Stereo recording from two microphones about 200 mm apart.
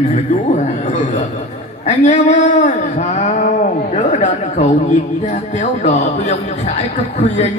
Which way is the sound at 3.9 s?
35° left (ahead or behind).